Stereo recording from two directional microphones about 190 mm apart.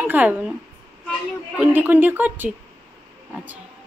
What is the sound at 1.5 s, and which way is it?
Speech, 10° right (ahead or behind).